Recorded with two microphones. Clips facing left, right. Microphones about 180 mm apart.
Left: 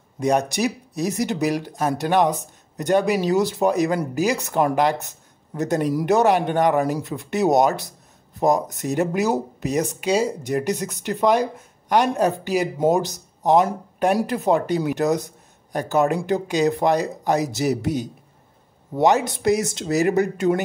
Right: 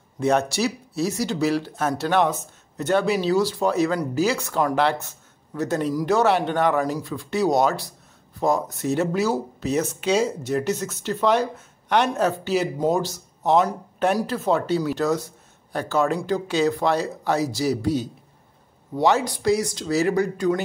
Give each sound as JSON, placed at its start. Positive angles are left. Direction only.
{"t": 0.2, "sound": "speech", "side_deg": 15}